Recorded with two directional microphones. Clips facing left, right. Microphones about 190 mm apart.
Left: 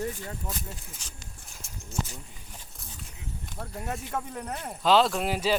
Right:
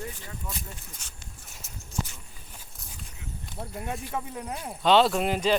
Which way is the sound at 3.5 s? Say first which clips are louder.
Right 1 dB; 10° right (ahead or behind).